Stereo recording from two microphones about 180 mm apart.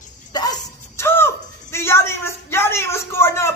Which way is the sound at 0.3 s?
20° left (ahead or behind).